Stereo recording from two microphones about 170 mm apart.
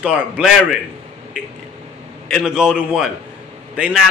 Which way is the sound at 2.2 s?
5° right (ahead or behind).